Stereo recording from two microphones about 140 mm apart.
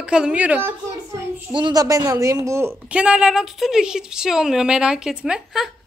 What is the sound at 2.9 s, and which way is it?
A woman's voice, 5° right (ahead or behind).